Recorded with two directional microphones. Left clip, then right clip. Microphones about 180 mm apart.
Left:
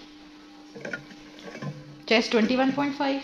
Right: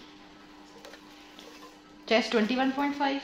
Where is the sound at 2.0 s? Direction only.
30° left (ahead or behind).